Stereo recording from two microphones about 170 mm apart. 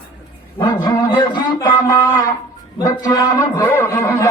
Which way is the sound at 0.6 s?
25° left (ahead or behind).